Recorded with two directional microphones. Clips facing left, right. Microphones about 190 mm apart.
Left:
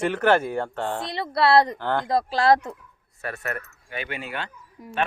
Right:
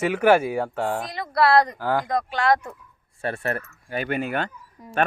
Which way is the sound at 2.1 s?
30° left (ahead or behind).